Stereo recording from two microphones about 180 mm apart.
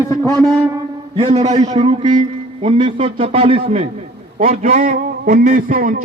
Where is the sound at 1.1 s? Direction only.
35° right (ahead or behind).